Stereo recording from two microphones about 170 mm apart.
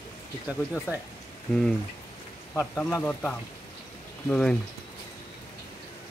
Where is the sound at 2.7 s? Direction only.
10° left (ahead or behind).